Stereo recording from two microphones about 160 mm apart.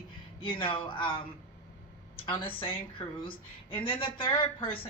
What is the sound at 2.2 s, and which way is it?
A woman's voice, 30° left (ahead or behind).